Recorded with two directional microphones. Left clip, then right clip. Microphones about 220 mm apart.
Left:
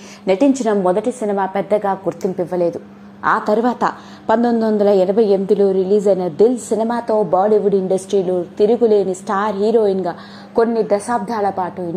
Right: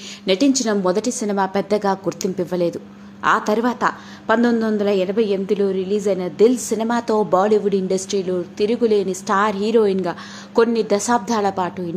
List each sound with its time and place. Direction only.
0.3 s a woman's voice: 15° right (ahead or behind)
2.7 s a woman's voice: centre (ahead or behind)